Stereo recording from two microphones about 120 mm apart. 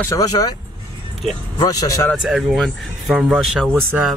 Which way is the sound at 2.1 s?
5° right (ahead or behind).